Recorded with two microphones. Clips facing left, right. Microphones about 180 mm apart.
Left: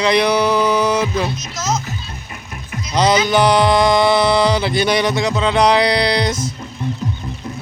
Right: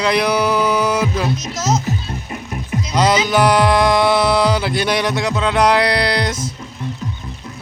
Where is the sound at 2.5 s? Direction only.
30° right (ahead or behind).